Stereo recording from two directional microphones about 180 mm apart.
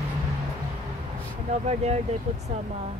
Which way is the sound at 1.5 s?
35° right (ahead or behind).